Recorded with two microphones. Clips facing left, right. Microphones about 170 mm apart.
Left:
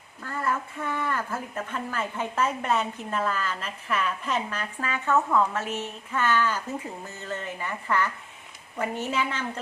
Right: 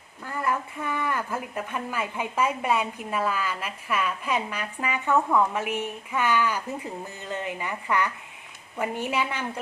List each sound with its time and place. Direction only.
0.2 s a woman's voice: 10° right (ahead or behind)